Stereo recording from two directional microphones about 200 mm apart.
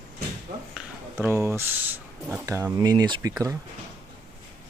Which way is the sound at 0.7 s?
5° right (ahead or behind).